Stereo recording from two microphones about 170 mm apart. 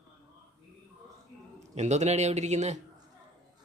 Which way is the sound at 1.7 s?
40° right (ahead or behind).